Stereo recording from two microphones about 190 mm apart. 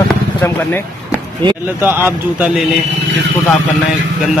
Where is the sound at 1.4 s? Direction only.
25° right (ahead or behind).